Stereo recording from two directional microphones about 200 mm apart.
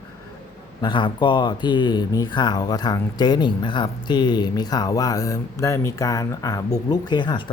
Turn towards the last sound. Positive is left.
turn(degrees=20)  # may be behind; listen again after turning